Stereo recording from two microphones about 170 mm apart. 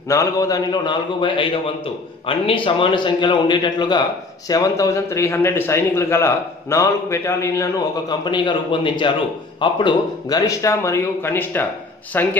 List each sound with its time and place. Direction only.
0.1 s a man's voice: 20° left (ahead or behind)